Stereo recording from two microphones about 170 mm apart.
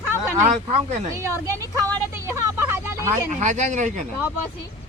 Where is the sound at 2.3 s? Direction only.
15° right (ahead or behind).